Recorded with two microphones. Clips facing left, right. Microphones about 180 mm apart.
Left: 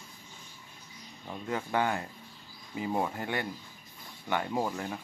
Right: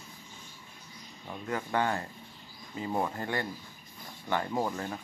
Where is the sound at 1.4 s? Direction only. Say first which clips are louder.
Even; 15° left (ahead or behind).